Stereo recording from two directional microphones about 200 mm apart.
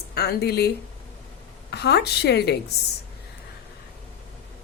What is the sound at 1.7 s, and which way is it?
Speech, 55° left (ahead or behind).